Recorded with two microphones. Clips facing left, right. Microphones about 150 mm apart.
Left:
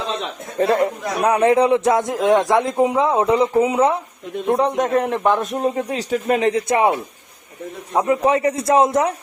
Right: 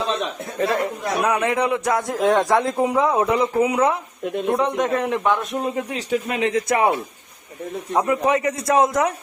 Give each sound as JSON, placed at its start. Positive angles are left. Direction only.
{"t": 0.6, "sound": "a man's voice", "side_deg": 30}
{"t": 6.5, "sound": "a man's voice", "side_deg": 25}